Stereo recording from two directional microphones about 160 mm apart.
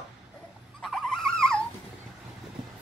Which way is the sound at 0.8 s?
Centre (ahead or behind).